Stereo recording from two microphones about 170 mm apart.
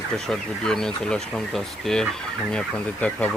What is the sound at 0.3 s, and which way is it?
Speech, 5° left (ahead or behind).